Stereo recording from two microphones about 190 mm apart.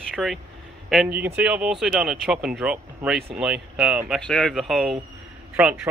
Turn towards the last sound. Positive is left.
turn(degrees=-5)  # may be behind; listen again after turning